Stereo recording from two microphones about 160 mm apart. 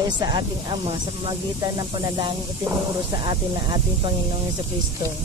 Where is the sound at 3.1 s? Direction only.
25° right (ahead or behind).